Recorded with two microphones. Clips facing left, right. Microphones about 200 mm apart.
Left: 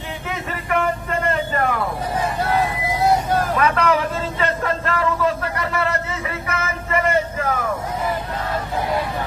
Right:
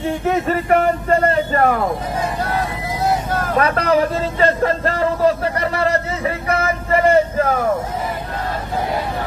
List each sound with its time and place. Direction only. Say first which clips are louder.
0.3 s a man's voice: right 8 dB; 40° right (ahead or behind)
3.5 s speech: right 6 dB; 40° right (ahead or behind)